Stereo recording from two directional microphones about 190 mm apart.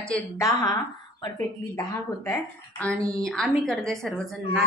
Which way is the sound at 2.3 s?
5° left (ahead or behind).